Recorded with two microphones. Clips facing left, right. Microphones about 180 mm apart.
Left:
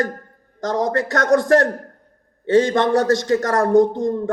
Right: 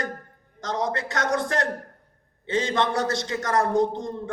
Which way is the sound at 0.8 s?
40° left (ahead or behind).